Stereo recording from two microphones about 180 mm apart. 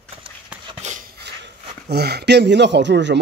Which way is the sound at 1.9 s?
65° right (ahead or behind).